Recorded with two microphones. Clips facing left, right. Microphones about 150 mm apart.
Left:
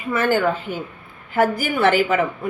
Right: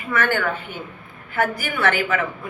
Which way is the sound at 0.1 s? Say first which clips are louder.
Left 4 dB; 30° left (ahead or behind).